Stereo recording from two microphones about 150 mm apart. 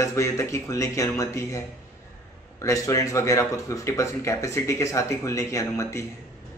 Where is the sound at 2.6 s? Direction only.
20° left (ahead or behind).